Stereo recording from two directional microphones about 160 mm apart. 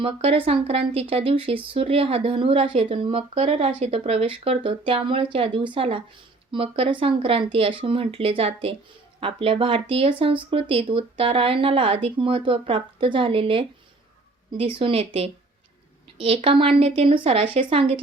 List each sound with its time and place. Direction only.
0.0 s speech: 35° right (ahead or behind)